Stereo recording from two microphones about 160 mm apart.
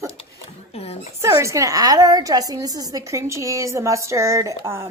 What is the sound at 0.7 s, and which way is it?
Speech, 40° left (ahead or behind).